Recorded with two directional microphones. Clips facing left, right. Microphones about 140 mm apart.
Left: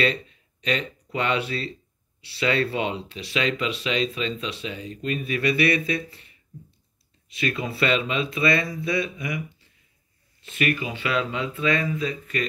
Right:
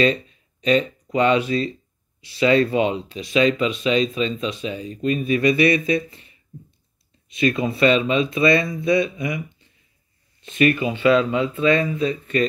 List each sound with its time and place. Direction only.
0.0 s a sound: 20° right (ahead or behind)
1.1 s speech: 20° right (ahead or behind)
3.3 s speech: 30° right (ahead or behind)
4.7 s speech: 30° right (ahead or behind)
5.2 s speech: 20° right (ahead or behind)
7.2 s speech: 20° right (ahead or behind)